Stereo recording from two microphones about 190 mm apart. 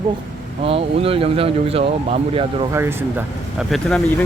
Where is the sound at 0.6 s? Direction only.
30° right (ahead or behind).